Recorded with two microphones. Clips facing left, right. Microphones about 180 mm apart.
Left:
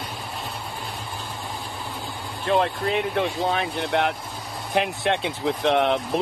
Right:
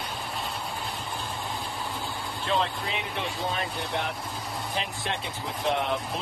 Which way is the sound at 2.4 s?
55° left (ahead or behind).